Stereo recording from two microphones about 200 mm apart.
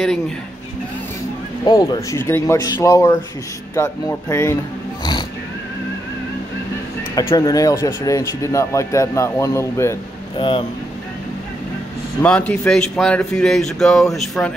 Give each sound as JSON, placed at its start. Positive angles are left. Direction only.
{"t": 1.7, "sound": "speech", "side_deg": 20}
{"t": 7.2, "sound": "speech", "side_deg": 15}
{"t": 10.3, "sound": "speech", "side_deg": 25}
{"t": 12.2, "sound": "speech", "side_deg": 5}